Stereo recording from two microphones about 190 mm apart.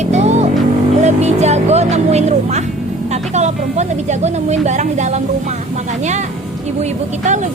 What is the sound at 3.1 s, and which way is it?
Speech, 35° right (ahead or behind).